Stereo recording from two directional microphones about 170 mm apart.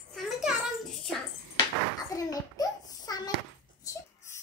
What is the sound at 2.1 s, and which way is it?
A child's voice, 20° left (ahead or behind).